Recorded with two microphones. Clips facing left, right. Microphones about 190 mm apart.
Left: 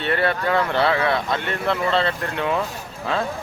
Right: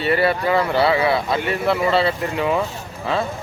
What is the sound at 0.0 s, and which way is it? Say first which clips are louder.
Speech: right 3 dB; 5° right (ahead or behind).